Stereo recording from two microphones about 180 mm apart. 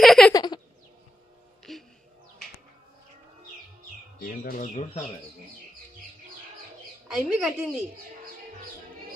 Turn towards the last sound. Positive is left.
turn(degrees=-5)  # may be behind; listen again after turning